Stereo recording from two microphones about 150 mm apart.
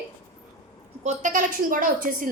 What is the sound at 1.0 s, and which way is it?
A woman's voice, 55° right (ahead or behind).